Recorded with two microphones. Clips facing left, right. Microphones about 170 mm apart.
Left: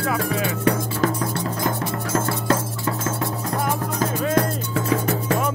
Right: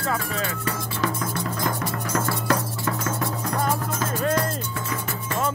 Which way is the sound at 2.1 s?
25° left (ahead or behind).